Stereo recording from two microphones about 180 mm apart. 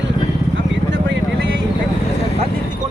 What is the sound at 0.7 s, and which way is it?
Vehicle, 90° right.